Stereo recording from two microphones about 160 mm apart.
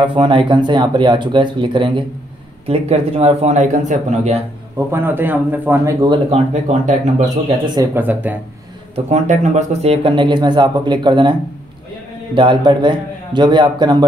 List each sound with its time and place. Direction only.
0.0 s speech: 30° right (ahead or behind)
4.7 s a man's voice: 15° right (ahead or behind)
6.5 s speech: 45° right (ahead or behind)
7.6 s speech: 25° right (ahead or behind)
7.9 s a man's voice: 10° right (ahead or behind)
8.9 s speech: 45° right (ahead or behind); by 11.3 s 30° right (ahead or behind)
12.4 s speech: 30° right (ahead or behind)